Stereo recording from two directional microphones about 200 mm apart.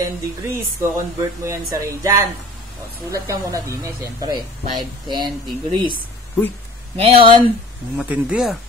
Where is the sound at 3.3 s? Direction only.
15° right (ahead or behind).